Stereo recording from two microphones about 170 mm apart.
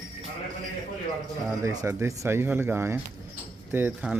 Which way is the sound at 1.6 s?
15° right (ahead or behind).